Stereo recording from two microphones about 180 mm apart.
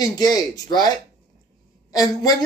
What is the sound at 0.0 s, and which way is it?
Speech, 20° left (ahead or behind).